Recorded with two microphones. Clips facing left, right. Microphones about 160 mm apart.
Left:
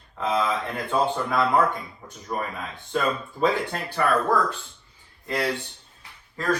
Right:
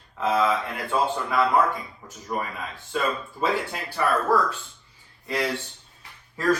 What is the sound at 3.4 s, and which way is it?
Speech, 10° right (ahead or behind).